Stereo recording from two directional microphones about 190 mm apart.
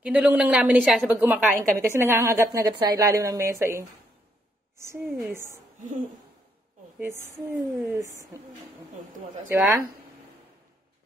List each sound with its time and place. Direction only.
0.0 s a woman's voice: 5° right (ahead or behind)
5.0 s a woman's voice: centre (ahead or behind)
5.3 s a woman's voice: 15° right (ahead or behind)
5.8 s speech: 40° right (ahead or behind)
7.0 s a woman's voice: 10° right (ahead or behind)